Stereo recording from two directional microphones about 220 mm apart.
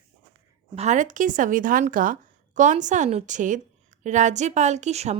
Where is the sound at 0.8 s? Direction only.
35° right (ahead or behind).